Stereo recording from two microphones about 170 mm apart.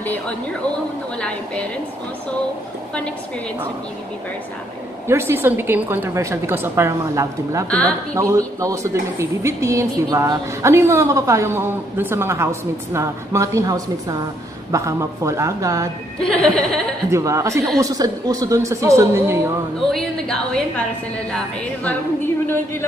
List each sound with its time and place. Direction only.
1.2 s a woman's voice: 5° left (ahead or behind)
5.0 s a woman's voice: 15° right (ahead or behind)
16.2 s a woman's voice: 5° left (ahead or behind)
17.1 s a woman's voice: 20° right (ahead or behind)
19.9 s a woman's voice: 5° left (ahead or behind)